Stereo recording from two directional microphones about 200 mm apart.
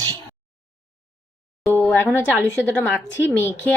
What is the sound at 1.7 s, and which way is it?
Speech, 10° left (ahead or behind).